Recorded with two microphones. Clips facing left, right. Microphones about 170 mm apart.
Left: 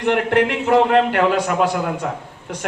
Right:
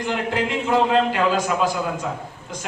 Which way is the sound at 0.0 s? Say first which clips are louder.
Left 7 dB; 65° left (ahead or behind).